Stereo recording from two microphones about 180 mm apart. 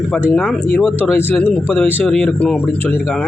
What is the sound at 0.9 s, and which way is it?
Speech, 10° left (ahead or behind).